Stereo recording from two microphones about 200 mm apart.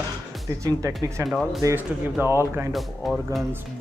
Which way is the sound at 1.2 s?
Centre (ahead or behind).